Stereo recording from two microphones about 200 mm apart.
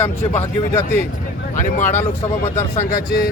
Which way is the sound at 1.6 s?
40° left (ahead or behind).